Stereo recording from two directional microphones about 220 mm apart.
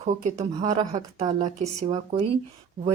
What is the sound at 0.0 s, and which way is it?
A woman's voice, 30° right (ahead or behind).